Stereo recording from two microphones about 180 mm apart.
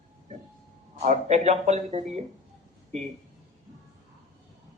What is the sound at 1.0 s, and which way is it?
Speech, 40° right (ahead or behind).